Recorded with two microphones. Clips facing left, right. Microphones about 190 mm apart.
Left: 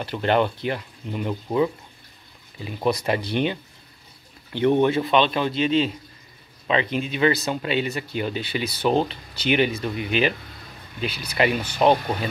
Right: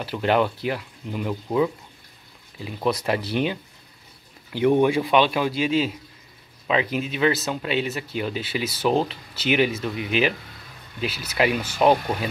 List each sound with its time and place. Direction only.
0.0 s speech: 5° right (ahead or behind)